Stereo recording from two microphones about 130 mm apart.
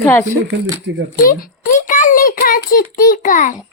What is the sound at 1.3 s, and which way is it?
A child's voice, 90° left.